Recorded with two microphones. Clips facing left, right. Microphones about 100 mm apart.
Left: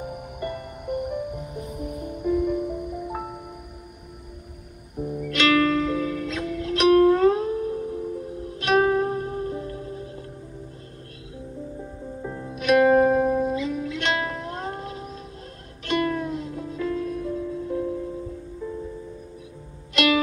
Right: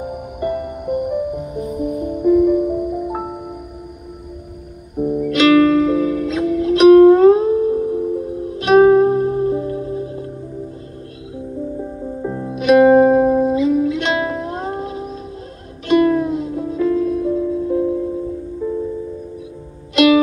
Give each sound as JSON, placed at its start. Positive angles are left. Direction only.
{"t": 0.0, "sound": "music", "side_deg": -20}
{"t": 4.9, "sound": "music", "side_deg": -20}
{"t": 11.8, "sound": "music", "side_deg": -30}
{"t": 12.5, "sound": "music", "side_deg": -20}